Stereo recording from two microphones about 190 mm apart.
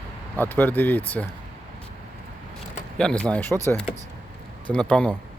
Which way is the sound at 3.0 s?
5° left (ahead or behind).